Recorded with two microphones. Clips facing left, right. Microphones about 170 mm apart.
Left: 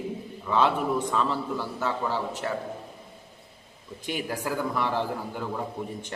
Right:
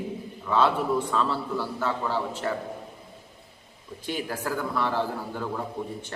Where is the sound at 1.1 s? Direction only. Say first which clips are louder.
Even; 15° left (ahead or behind).